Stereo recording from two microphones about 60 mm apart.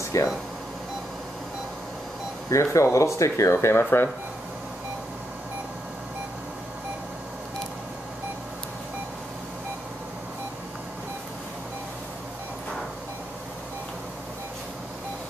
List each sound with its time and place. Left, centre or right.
0.1 s speech: left
2.5 s speech: left